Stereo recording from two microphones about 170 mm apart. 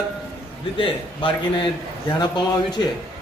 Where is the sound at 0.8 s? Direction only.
30° left (ahead or behind).